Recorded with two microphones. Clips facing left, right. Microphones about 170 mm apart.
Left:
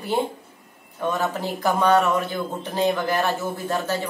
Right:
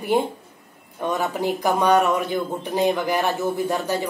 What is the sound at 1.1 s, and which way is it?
Speech, 15° right (ahead or behind).